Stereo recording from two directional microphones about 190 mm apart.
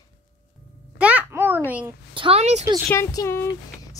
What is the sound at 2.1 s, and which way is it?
Speech, 30° right (ahead or behind).